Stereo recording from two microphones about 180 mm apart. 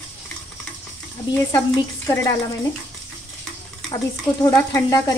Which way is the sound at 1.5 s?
15° left (ahead or behind).